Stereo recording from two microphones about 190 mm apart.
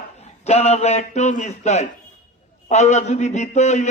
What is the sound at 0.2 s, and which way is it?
A man's voice, 35° left (ahead or behind).